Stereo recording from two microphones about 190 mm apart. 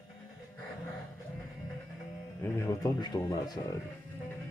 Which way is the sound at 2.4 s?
15° left (ahead or behind).